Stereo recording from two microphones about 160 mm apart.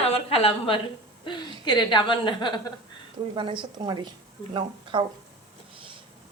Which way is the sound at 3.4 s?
30° right (ahead or behind).